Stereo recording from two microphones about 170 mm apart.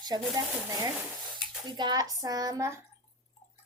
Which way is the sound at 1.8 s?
25° right (ahead or behind).